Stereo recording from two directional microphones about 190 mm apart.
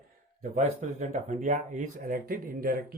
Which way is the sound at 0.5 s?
40° right (ahead or behind).